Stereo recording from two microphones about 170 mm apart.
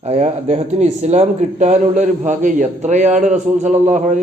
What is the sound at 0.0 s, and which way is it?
Speech, 40° right (ahead or behind).